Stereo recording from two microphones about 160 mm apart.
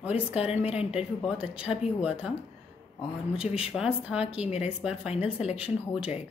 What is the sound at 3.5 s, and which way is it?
Speech, 5° right (ahead or behind).